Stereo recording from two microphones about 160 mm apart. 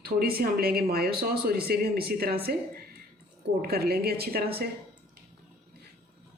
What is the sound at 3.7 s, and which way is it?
Speech, 75° right (ahead or behind).